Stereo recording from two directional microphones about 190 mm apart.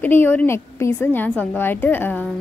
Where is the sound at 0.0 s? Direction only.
10° left (ahead or behind).